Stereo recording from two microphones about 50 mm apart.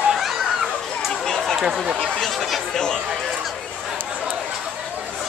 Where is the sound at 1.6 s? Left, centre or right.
Centre.